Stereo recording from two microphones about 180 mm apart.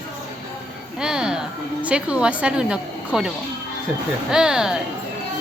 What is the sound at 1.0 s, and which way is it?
A woman's voice, 5° right (ahead or behind).